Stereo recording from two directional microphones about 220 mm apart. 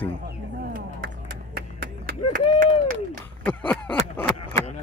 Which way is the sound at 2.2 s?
90° left.